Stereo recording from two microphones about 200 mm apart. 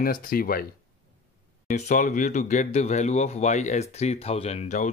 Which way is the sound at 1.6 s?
35° left (ahead or behind).